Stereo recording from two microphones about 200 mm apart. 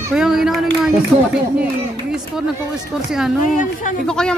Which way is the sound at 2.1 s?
5° right (ahead or behind).